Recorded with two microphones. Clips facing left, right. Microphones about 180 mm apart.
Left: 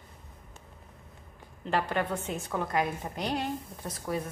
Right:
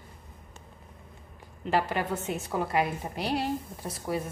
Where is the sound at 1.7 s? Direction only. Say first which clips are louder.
Right 1 dB; 5° right (ahead or behind).